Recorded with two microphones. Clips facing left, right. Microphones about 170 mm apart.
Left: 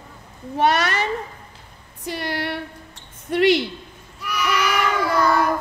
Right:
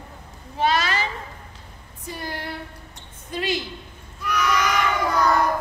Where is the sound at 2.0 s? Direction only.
80° left.